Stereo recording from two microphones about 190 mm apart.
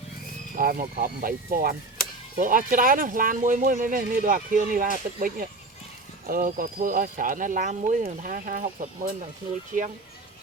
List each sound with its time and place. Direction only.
0.5 s speech: 45° right (ahead or behind)